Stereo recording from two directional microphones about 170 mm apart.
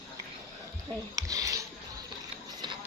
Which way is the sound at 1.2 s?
20° right (ahead or behind).